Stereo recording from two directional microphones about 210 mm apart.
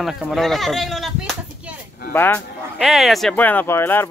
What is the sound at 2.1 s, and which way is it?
Speech, 10° left (ahead or behind).